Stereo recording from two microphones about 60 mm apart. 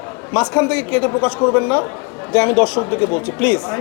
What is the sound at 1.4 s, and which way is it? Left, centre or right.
Speech, left.